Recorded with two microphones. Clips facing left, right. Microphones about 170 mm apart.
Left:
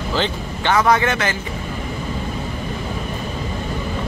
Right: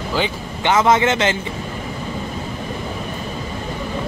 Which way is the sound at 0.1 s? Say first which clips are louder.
Even; 15° right (ahead or behind).